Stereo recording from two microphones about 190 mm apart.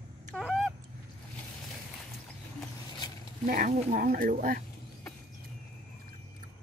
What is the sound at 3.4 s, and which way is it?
Speech, 45° right (ahead or behind).